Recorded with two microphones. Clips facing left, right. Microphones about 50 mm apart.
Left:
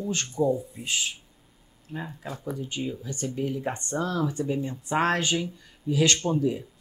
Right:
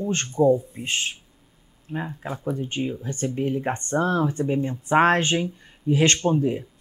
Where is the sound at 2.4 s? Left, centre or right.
Right.